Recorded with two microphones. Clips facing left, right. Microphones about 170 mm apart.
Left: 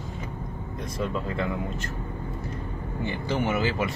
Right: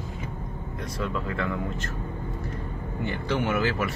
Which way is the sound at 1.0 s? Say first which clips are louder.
Left 1 dB; 15° left (ahead or behind).